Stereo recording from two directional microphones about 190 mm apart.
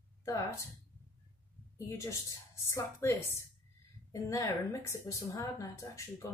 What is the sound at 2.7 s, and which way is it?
A woman's voice, 15° left (ahead or behind).